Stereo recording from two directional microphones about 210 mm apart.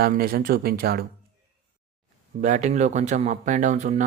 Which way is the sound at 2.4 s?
35° right (ahead or behind).